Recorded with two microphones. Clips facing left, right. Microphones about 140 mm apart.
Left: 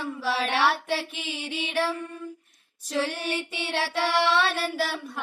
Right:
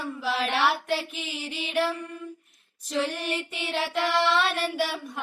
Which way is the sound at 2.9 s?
10° left (ahead or behind).